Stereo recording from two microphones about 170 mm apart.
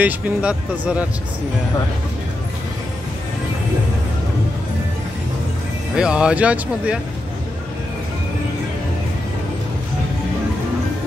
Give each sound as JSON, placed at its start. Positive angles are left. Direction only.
{"t": 0.0, "sound": "speech", "side_deg": -5}
{"t": 5.9, "sound": "speech", "side_deg": -5}